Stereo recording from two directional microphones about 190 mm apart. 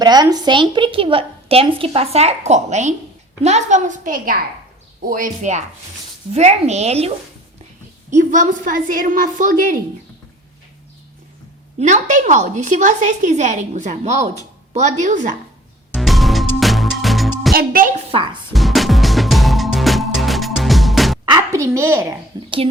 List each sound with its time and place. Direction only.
0.0 s a woman's voice: 20° right (ahead or behind)
8.1 s a woman's voice: 40° right (ahead or behind)
11.8 s a woman's voice: 40° right (ahead or behind)
16.0 s music: centre (ahead or behind)
17.5 s a woman's voice: 50° right (ahead or behind)
18.5 s music: centre (ahead or behind)
21.2 s a sound: 20° right (ahead or behind)
22.4 s a sound: 25° right (ahead or behind)